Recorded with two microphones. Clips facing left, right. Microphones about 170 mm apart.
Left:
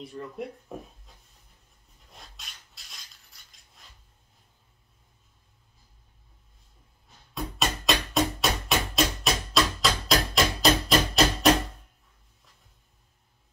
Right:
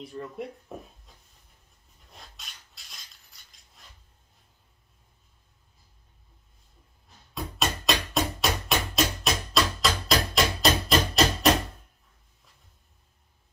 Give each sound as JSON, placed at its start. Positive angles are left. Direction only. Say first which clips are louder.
{"t": 0.0, "sound": "speech", "louder": "even", "side_deg": 0}
{"t": 2.3, "sound": "rub", "louder": "even", "side_deg": 0}
{"t": 3.3, "sound": "coin", "louder": "even", "side_deg": 0}
{"t": 7.3, "sound": "music", "louder": "even", "side_deg": 0}
{"t": 11.4, "sound": "a sound", "louder": "left 2 dB", "side_deg": 0}